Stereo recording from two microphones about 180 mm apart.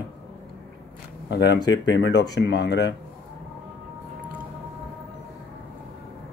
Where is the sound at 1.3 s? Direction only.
70° left (ahead or behind).